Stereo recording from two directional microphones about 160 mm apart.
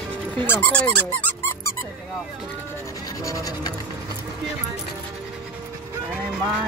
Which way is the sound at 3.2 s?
20° left (ahead or behind).